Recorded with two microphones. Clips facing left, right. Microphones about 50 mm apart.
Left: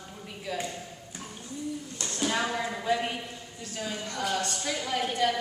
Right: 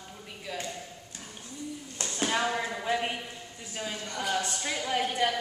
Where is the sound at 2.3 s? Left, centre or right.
Centre.